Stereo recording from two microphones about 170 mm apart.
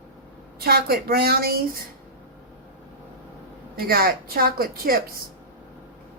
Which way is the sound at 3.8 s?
60° right (ahead or behind).